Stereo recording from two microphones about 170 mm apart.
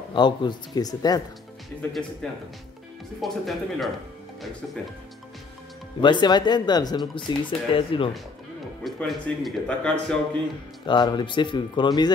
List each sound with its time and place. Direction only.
0.1 s speech: 25° left (ahead or behind)
1.8 s speech: 5° left (ahead or behind)
3.2 s speech: centre (ahead or behind)
5.9 s speech: 25° left (ahead or behind)
8.8 s speech: centre (ahead or behind)
10.9 s speech: 25° left (ahead or behind)